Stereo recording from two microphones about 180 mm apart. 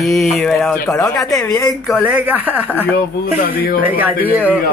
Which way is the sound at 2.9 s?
55° left (ahead or behind).